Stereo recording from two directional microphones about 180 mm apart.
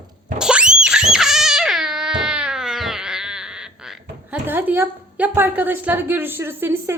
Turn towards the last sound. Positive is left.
turn(degrees=-10)  # may be behind; listen again after turning